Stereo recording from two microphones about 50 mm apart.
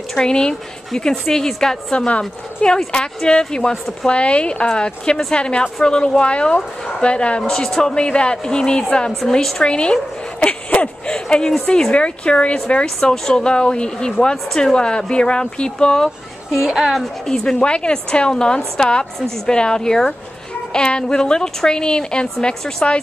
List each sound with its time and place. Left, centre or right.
0.2 s speech: centre
2.0 s speech: left
9.3 s speech: centre
9.6 s speech: centre
12.8 s speech: centre
16.4 s a woman's voice: centre
17.3 s speech: centre